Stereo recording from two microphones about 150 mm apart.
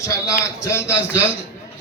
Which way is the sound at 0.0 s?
20° left (ahead or behind).